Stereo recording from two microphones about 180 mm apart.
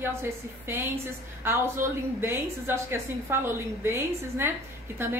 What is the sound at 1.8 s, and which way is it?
A woman's voice, 10° right (ahead or behind).